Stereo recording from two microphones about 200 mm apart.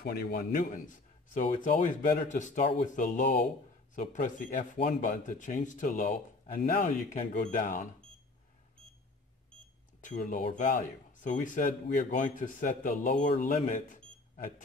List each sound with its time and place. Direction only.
0.0 s a man's voice: 50° left (ahead or behind)
10.0 s speech: 40° left (ahead or behind)
13.7 s cash register: 40° left (ahead or behind)